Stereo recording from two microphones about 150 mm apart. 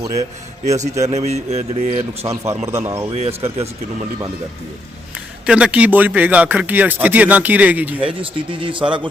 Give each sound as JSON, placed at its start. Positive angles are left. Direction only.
{"t": 0.6, "sound": "speech", "side_deg": -50}
{"t": 2.2, "sound": "speech", "side_deg": -20}
{"t": 3.1, "sound": "speech", "side_deg": -45}
{"t": 5.5, "sound": "speech", "side_deg": -5}
{"t": 8.0, "sound": "speech", "side_deg": -35}